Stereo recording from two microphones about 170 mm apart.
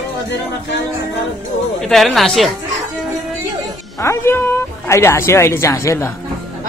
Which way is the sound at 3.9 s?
15° left (ahead or behind).